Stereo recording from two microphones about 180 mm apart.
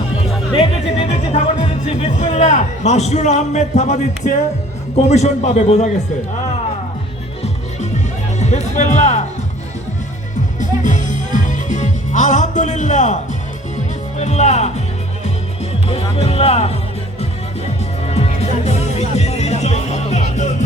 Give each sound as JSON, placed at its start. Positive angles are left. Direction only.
{"t": 0.5, "sound": "music", "side_deg": 35}
{"t": 2.3, "sound": "speech", "side_deg": 40}
{"t": 8.4, "sound": "speech", "side_deg": 40}
{"t": 10.6, "sound": "music", "side_deg": 45}
{"t": 14.2, "sound": "speech", "side_deg": 40}
{"t": 15.9, "sound": "speech", "side_deg": 35}
{"t": 18.1, "sound": "music", "side_deg": 35}